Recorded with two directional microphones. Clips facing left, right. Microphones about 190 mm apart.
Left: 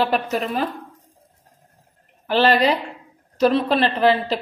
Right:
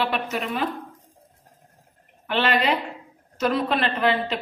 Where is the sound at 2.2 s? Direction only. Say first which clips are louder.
Left 5 dB; 35° left (ahead or behind).